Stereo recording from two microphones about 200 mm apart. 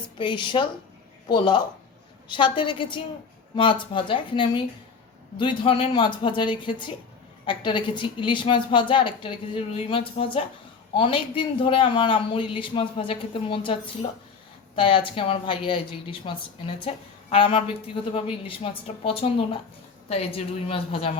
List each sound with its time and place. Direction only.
0.2 s a woman's voice: 25° left (ahead or behind)